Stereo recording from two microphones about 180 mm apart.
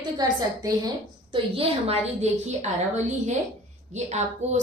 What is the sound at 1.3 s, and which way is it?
A woman's voice, 30° right (ahead or behind).